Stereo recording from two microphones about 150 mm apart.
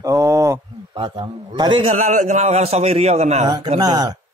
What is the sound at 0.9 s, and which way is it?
A man's voice, 30° right (ahead or behind).